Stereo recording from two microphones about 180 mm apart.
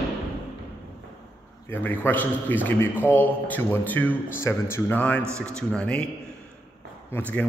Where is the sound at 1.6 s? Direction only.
10° left (ahead or behind).